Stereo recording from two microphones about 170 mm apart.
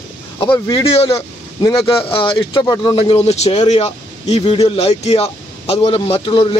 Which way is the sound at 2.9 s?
35° left (ahead or behind).